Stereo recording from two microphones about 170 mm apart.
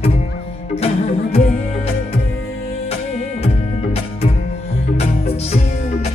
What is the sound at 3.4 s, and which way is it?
Music, 35° left (ahead or behind).